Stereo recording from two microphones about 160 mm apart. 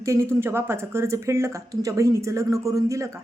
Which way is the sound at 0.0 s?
15° right (ahead or behind).